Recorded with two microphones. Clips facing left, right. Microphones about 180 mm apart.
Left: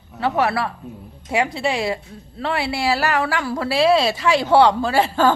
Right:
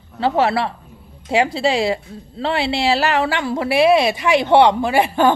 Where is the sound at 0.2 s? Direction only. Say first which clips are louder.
Right 3 dB; 30° right (ahead or behind).